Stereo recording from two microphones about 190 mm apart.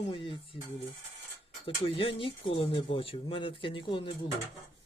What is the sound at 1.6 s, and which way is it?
Speech, 30° left (ahead or behind).